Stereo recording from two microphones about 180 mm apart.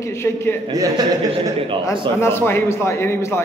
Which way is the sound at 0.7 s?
20° right (ahead or behind).